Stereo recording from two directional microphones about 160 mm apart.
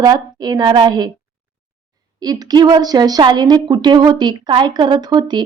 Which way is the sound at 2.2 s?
25° right (ahead or behind).